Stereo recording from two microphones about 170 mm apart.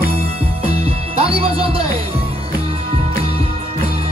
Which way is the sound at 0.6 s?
35° right (ahead or behind).